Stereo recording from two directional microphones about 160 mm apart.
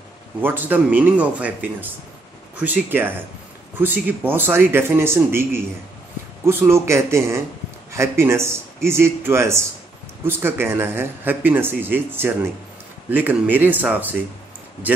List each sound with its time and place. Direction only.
0.4 s speech: 10° right (ahead or behind)